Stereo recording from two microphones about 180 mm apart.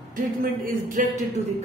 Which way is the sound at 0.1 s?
50° right (ahead or behind).